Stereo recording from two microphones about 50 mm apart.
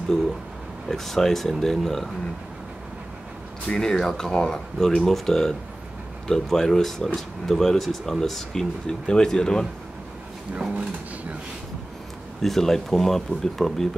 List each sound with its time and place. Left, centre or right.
0.8 s speech: centre
3.7 s speech: centre
10.7 s speech: right
12.4 s speech: centre